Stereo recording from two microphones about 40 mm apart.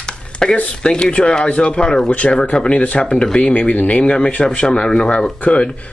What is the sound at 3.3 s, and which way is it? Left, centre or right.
Speech, left.